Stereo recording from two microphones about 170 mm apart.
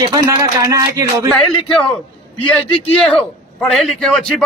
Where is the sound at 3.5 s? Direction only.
5° left (ahead or behind).